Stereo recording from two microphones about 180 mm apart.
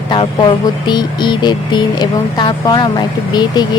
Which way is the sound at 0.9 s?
25° left (ahead or behind).